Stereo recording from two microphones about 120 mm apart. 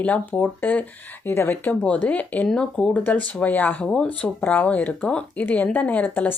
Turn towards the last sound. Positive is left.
turn(degrees=15)  # may be behind; listen again after turning